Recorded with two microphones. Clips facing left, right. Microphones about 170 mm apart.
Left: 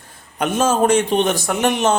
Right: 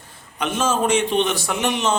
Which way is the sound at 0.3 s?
45° left (ahead or behind).